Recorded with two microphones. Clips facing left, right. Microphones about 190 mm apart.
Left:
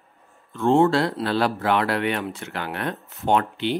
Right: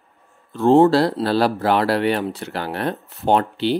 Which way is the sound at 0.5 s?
35° right (ahead or behind).